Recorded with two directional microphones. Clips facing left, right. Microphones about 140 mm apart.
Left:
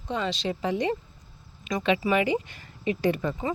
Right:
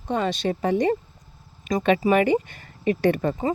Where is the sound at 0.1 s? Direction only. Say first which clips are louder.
Right 5 dB; 50° right (ahead or behind).